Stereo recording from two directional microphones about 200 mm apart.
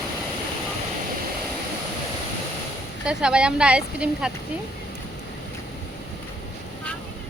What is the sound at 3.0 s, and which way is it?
Speech, 5° right (ahead or behind).